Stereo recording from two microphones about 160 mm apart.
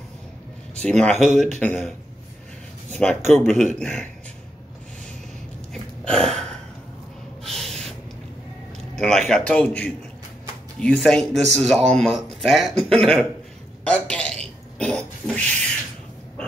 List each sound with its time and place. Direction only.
0.8 s a man's voice: 5° left (ahead or behind)
2.9 s speech: 5° left (ahead or behind)
3.4 s speech: 45° right (ahead or behind)
3.8 s a man's voice: 10° left (ahead or behind)
5.7 s a sound: 5° left (ahead or behind)
7.4 s gasp: centre (ahead or behind)
8.9 s a man's voice: 5° left (ahead or behind)
13.8 s a sound: 5° left (ahead or behind)